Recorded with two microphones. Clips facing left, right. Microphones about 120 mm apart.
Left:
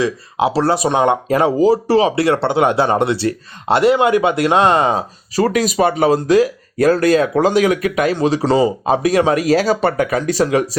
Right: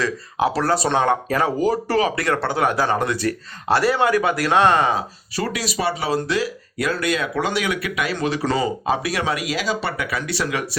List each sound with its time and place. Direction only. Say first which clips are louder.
0.0 s speech: left 4 dB; 20° left (ahead or behind)
8.4 s speech: left 8 dB; 20° left (ahead or behind)
8.8 s speech: left 8 dB; 35° left (ahead or behind)